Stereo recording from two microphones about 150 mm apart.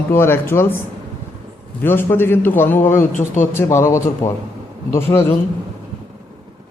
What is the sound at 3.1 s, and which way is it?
Speech, 55° left (ahead or behind).